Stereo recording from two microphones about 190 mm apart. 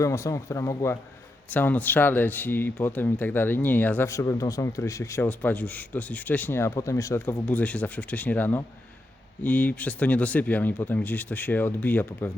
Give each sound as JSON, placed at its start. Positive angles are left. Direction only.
{"t": 0.0, "sound": "speech", "side_deg": 15}